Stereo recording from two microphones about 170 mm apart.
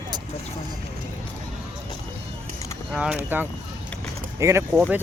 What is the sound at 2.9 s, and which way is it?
Speech, 5° right (ahead or behind).